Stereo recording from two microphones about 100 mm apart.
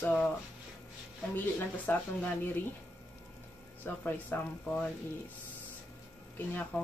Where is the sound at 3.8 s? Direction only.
20° left (ahead or behind).